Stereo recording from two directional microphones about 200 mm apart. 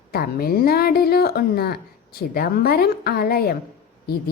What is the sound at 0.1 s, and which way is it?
Speech, 50° left (ahead or behind).